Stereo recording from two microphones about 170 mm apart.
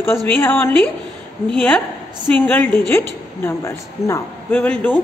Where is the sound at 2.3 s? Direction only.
10° left (ahead or behind).